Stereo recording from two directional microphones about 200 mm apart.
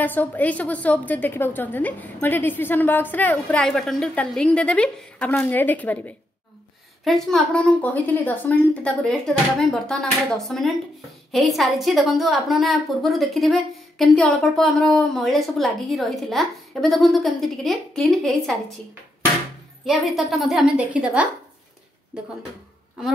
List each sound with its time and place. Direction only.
0.0 s a woman's voice: 10° left (ahead or behind)
19.8 s a woman's voice: centre (ahead or behind)